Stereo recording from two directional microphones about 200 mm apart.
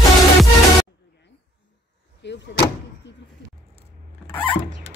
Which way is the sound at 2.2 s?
60° left (ahead or behind).